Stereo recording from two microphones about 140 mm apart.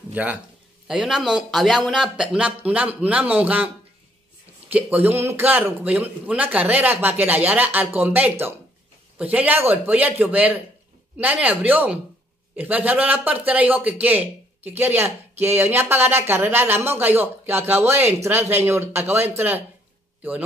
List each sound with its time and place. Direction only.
0.1 s a man's voice: 10° right (ahead or behind)
4.7 s a man's voice: 10° right (ahead or behind)